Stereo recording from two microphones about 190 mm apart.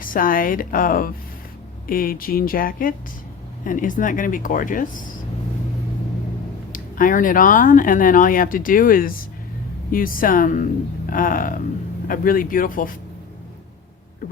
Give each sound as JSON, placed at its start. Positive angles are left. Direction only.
{"t": 0.0, "sound": "speech", "side_deg": 45}
{"t": 6.7, "sound": "speech", "side_deg": 45}